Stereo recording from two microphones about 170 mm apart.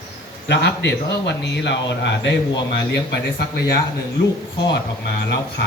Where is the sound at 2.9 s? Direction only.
75° left (ahead or behind).